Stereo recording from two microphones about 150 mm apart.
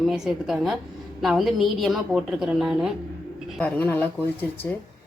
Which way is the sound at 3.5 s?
10° left (ahead or behind).